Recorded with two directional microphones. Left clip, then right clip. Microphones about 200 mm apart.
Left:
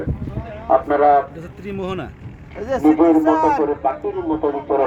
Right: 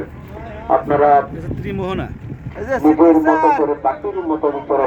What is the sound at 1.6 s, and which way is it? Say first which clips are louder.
Speech: right 2 dB; centre (ahead or behind).